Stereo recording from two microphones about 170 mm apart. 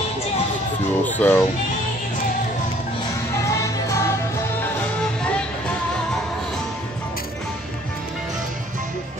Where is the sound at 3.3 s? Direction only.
15° left (ahead or behind).